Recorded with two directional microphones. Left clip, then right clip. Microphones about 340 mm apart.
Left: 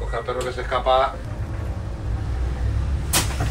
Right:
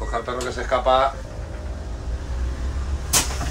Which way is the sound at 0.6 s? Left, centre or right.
Right.